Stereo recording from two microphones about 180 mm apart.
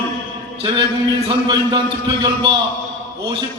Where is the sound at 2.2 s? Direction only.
25° right (ahead or behind).